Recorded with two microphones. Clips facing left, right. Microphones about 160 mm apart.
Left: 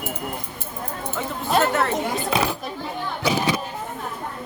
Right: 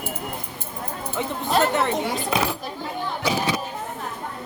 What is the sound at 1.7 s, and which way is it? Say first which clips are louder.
Speech: even; 20° right (ahead or behind).